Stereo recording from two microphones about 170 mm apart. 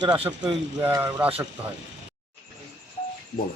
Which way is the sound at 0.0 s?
25° right (ahead or behind).